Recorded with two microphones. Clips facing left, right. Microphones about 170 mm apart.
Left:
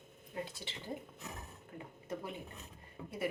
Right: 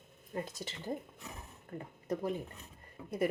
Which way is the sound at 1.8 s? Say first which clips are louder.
Right 7 dB; 40° right (ahead or behind).